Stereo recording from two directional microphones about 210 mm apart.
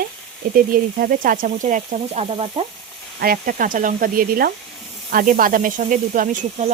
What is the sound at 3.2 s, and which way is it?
Sizzle, 45° right (ahead or behind).